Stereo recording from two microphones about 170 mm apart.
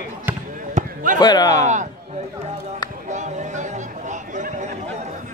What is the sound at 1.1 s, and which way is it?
Speech, 25° left (ahead or behind).